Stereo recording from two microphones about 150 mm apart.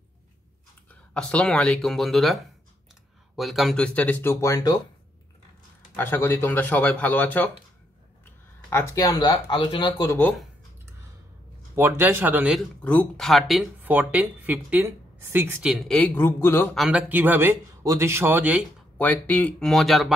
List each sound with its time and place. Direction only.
1.1 s speech: 5° left (ahead or behind)
5.9 s speech: 15° left (ahead or behind)
8.6 s speech: 20° left (ahead or behind)
11.7 s speech: 15° right (ahead or behind)
12.5 s speech: 5° left (ahead or behind)
13.8 s speech: 10° right (ahead or behind)
15.6 s speech: 5° right (ahead or behind)
16.0 s speech: 15° left (ahead or behind)
16.7 s speech: centre (ahead or behind)
17.1 s speech: 15° right (ahead or behind)
18.9 s speech: 10° left (ahead or behind)